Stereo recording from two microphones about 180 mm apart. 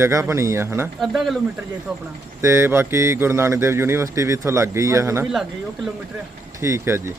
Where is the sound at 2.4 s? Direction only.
15° right (ahead or behind).